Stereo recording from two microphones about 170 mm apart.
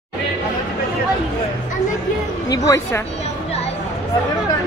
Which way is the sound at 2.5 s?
20° left (ahead or behind).